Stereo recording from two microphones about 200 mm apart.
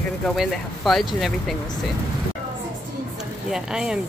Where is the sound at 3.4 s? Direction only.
Centre (ahead or behind).